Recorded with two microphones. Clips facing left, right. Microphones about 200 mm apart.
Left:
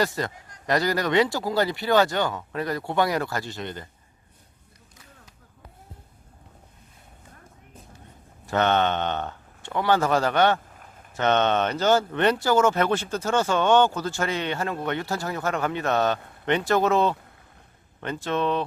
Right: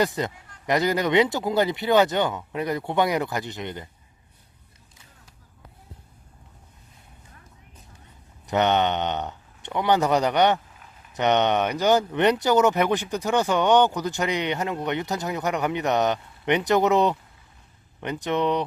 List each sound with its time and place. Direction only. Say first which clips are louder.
0.0 s speech: right 2 dB; 20° right (ahead or behind)
8.4 s speech: right 1 dB; 15° right (ahead or behind)
10.8 s a sound: left 2 dB; 50° left (ahead or behind)
11.1 s speech: right 1 dB; 15° right (ahead or behind)